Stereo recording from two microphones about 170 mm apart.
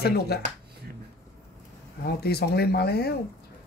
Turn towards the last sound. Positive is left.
turn(degrees=70)  # may be behind; listen again after turning